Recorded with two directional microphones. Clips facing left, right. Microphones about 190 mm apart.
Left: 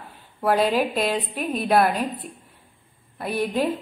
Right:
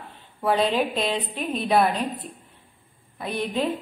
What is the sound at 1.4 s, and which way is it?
Speech, 45° left (ahead or behind).